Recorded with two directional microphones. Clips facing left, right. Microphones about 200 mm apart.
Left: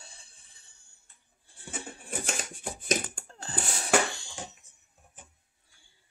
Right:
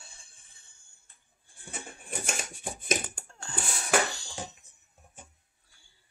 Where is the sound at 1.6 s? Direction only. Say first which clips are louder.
Left 2 dB; 30° left (ahead or behind).